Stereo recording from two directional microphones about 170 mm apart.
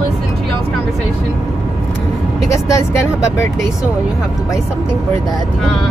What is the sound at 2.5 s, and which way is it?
Speech, 15° left (ahead or behind).